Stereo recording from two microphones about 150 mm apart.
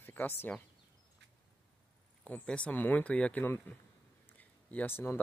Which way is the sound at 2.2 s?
10° left (ahead or behind).